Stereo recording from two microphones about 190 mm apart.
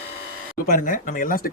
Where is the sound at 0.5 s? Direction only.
45° left (ahead or behind).